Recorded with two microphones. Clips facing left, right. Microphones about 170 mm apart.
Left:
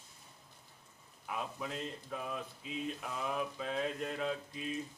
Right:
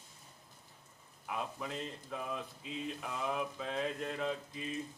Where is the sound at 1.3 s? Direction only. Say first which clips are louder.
Even; centre (ahead or behind).